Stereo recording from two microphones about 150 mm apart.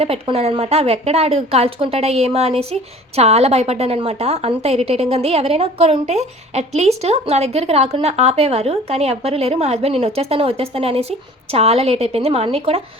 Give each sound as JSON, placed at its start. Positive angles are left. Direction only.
{"t": 0.0, "sound": "a woman's voice", "side_deg": -40}